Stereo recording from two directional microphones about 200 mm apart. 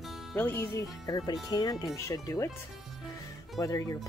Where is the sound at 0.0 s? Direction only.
Centre (ahead or behind).